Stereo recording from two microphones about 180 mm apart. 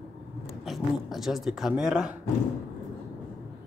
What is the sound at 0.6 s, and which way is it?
Speech, centre (ahead or behind).